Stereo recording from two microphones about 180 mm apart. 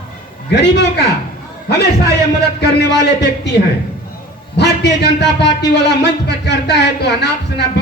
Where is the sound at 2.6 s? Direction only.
70° left (ahead or behind).